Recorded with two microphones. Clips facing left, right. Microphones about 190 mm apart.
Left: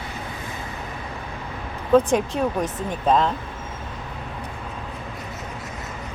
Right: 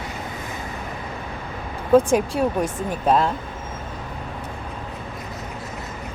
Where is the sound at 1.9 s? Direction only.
10° right (ahead or behind).